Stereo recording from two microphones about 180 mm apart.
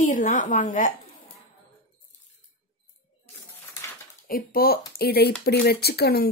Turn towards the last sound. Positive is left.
turn(degrees=60)  # may be behind; listen again after turning